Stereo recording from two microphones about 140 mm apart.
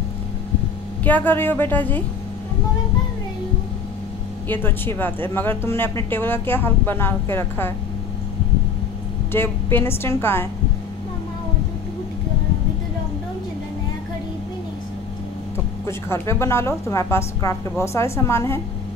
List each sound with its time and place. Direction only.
1.0 s a woman's voice: 10° left (ahead or behind)
4.5 s a woman's voice: 15° left (ahead or behind)
9.3 s a woman's voice: 15° left (ahead or behind)
15.9 s a woman's voice: 20° left (ahead or behind)